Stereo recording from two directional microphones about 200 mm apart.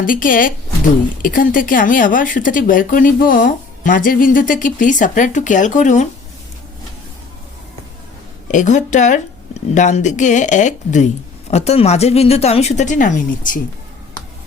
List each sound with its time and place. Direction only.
0.0 s speech: 45° left (ahead or behind)
8.4 s a woman's voice: 40° left (ahead or behind)